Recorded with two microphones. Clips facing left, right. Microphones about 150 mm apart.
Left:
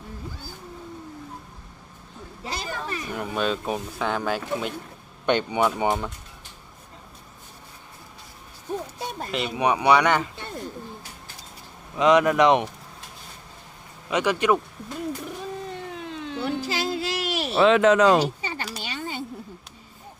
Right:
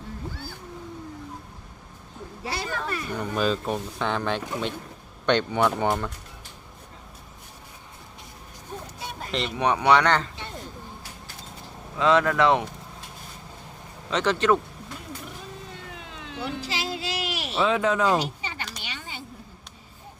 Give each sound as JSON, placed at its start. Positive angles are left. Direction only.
{"t": 2.5, "sound": "speech", "side_deg": 20}
{"t": 3.2, "sound": "speech", "side_deg": 0}
{"t": 9.3, "sound": "speech", "side_deg": 10}
{"t": 11.9, "sound": "speech", "side_deg": 20}
{"t": 14.1, "sound": "speech", "side_deg": 10}
{"t": 16.4, "sound": "a sound", "side_deg": 45}
{"t": 17.6, "sound": "speech", "side_deg": 75}
{"t": 18.8, "sound": "a sound", "side_deg": 40}